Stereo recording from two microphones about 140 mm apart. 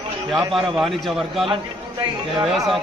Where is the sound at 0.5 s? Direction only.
Centre (ahead or behind).